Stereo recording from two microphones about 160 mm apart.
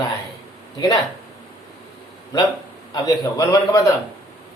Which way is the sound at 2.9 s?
20° left (ahead or behind).